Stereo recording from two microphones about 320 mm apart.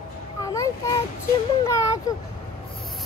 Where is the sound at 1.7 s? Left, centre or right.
Centre.